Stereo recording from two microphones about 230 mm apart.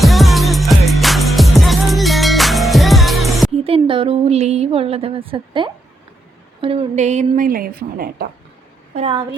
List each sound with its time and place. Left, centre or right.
0.0 s music: centre
3.6 s a woman's voice: right
9.0 s speech: right